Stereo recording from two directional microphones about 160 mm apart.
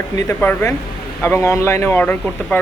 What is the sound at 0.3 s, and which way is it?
Speech, 10° left (ahead or behind).